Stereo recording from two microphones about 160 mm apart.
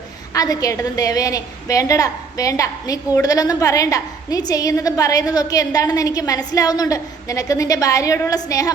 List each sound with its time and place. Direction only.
0.3 s a woman's voice: 20° left (ahead or behind)